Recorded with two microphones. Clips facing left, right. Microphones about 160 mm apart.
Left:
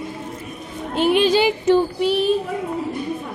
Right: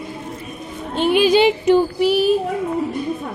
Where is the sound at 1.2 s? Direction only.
15° right (ahead or behind).